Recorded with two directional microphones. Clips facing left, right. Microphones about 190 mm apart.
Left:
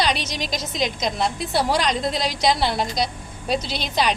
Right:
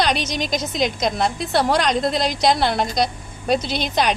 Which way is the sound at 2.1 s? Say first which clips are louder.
Right 3 dB; 50° right (ahead or behind).